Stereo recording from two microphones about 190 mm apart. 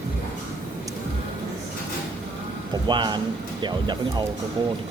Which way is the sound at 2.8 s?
25° right (ahead or behind).